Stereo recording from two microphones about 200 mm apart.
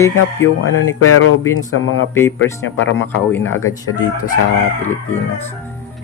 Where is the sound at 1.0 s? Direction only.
90° left.